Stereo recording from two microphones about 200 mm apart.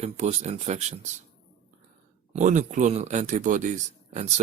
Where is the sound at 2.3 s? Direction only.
35° right (ahead or behind).